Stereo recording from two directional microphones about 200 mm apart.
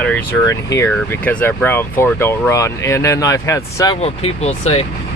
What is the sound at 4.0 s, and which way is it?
Speech, 30° left (ahead or behind).